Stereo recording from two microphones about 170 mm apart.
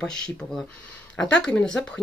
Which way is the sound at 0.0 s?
5° left (ahead or behind).